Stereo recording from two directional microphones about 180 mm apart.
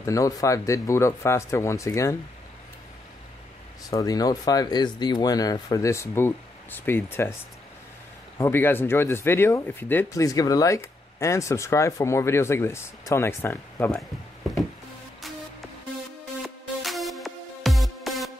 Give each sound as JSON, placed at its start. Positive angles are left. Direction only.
{"t": 0.0, "sound": "speech", "side_deg": 20}
{"t": 3.9, "sound": "speech", "side_deg": 20}
{"t": 8.4, "sound": "speech", "side_deg": 10}
{"t": 16.4, "sound": "music", "side_deg": 0}